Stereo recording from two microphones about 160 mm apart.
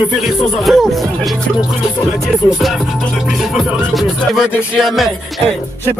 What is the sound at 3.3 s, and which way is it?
Music, centre (ahead or behind).